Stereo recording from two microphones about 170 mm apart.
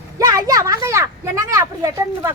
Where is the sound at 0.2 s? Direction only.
20° right (ahead or behind).